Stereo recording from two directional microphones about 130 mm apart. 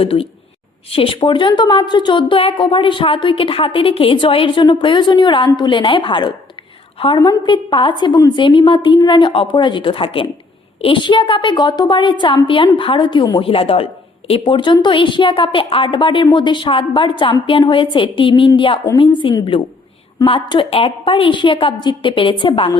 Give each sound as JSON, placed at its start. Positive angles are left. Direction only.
{"t": 0.0, "sound": "a woman's voice", "side_deg": 45}